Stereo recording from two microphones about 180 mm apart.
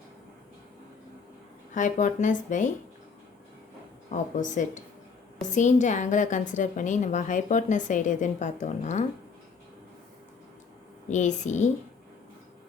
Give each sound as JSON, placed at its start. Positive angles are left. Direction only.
{"t": 1.7, "sound": "a woman's voice", "side_deg": 45}
{"t": 4.1, "sound": "a woman's voice", "side_deg": 45}
{"t": 11.1, "sound": "a woman's voice", "side_deg": 40}